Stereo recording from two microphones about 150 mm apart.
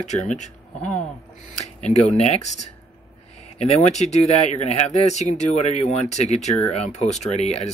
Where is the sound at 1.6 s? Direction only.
45° left (ahead or behind).